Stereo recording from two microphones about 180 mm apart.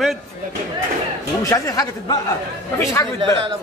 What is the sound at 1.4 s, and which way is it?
Speech, 20° left (ahead or behind).